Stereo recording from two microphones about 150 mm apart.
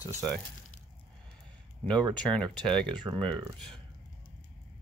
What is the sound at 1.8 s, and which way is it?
Speech, 5° left (ahead or behind).